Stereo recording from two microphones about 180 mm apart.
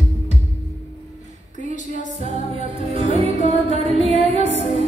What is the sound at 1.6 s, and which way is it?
Music, 45° left (ahead or behind).